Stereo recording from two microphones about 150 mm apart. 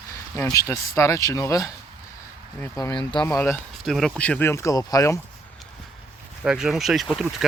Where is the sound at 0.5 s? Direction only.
20° left (ahead or behind).